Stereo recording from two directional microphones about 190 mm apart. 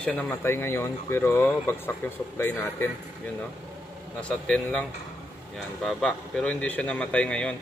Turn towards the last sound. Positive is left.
turn(degrees=5)  # may be behind; listen again after turning